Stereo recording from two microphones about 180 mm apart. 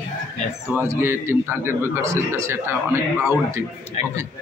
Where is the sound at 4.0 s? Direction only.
40° left (ahead or behind).